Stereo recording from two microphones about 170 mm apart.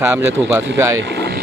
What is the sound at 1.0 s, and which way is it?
Vehicle, 80° right.